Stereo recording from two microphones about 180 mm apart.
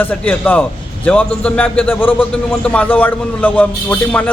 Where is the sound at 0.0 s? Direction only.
10° left (ahead or behind).